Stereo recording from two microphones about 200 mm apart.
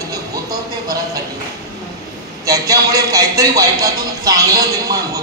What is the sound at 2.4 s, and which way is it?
A man's voice, 15° right (ahead or behind).